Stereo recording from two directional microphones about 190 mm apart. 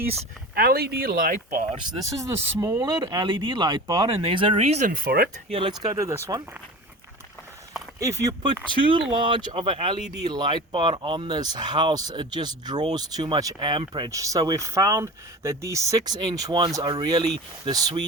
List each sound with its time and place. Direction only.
0.5 s speech: 55° right (ahead or behind)
2.0 s speech: 20° right (ahead or behind); by 4.9 s 35° right (ahead or behind)
4.9 s speech: 50° right (ahead or behind)
5.5 s speech: 30° right (ahead or behind)
5.9 s speech: 15° right (ahead or behind)
7.9 s speech: 15° right (ahead or behind)